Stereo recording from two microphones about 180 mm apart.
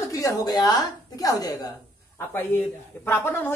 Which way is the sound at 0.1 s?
20° left (ahead or behind).